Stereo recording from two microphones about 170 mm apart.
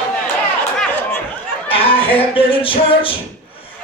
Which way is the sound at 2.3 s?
30° left (ahead or behind).